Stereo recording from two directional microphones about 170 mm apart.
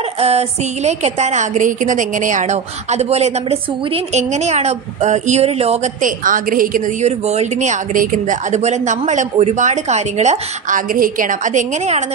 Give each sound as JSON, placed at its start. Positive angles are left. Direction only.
{"t": 0.2, "sound": "a woman's voice", "side_deg": -35}